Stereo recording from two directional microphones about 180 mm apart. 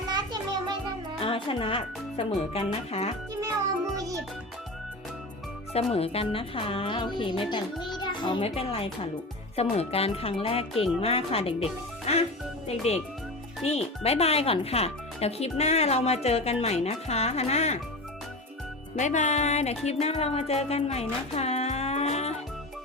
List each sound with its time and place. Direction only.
1.2 s speech: 30° left (ahead or behind)
3.9 s music: 20° right (ahead or behind)
5.7 s a child's voice: 35° left (ahead or behind)
12.1 s music: 35° left (ahead or behind)
12.6 s speech: 35° left (ahead or behind)
18.9 s music: 40° left (ahead or behind)